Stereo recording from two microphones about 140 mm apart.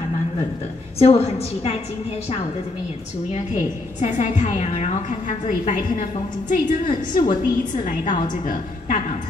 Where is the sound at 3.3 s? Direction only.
55° left (ahead or behind).